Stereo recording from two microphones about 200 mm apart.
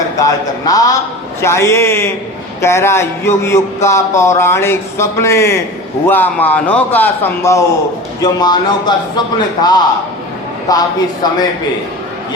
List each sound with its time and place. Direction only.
0.2 s a man's voice: 20° left (ahead or behind)